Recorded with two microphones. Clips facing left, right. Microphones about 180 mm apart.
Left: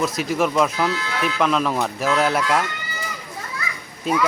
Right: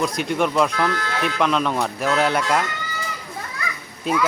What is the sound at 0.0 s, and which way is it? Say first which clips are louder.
Speech: even; centre (ahead or behind).